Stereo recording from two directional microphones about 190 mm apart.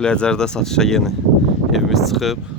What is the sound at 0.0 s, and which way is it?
Speech, 5° left (ahead or behind).